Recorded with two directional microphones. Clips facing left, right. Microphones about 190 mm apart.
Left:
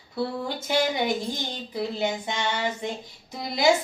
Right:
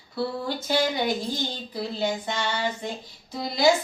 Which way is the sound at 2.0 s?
20° left (ahead or behind).